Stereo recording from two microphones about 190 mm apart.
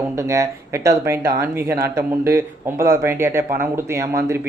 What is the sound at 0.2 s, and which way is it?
Speech, 15° right (ahead or behind).